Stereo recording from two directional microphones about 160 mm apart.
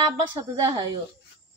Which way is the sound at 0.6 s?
25° right (ahead or behind).